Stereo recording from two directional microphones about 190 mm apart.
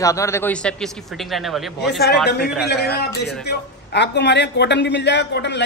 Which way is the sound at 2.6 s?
60° left (ahead or behind).